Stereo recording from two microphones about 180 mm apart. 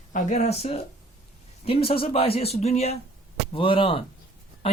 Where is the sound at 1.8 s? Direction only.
30° left (ahead or behind).